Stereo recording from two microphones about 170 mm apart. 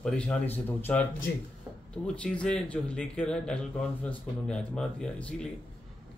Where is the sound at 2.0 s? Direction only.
5° left (ahead or behind).